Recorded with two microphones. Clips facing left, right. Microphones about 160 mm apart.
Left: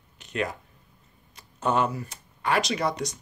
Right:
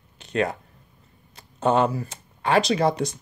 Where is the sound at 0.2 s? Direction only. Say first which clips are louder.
Right 5 dB; 30° right (ahead or behind).